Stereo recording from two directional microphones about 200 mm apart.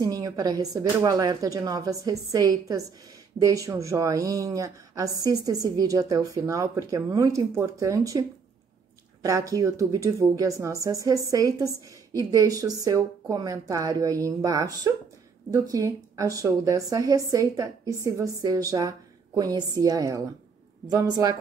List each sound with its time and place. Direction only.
0.0 s a woman's voice: 20° right (ahead or behind)